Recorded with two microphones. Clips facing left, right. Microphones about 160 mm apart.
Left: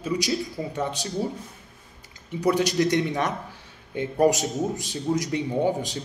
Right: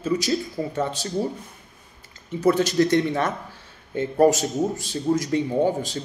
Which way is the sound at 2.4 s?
15° left (ahead or behind).